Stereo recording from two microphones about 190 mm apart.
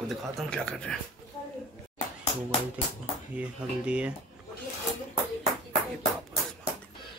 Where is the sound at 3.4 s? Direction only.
5° right (ahead or behind).